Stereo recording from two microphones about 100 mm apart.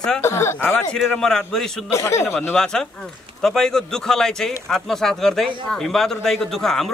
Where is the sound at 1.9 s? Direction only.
30° left (ahead or behind).